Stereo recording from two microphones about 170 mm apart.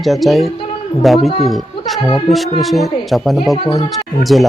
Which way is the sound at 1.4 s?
Centre (ahead or behind).